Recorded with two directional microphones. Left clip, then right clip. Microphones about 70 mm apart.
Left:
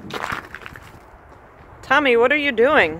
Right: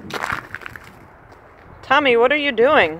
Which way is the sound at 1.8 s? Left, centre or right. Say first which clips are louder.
Right 1 dB; left.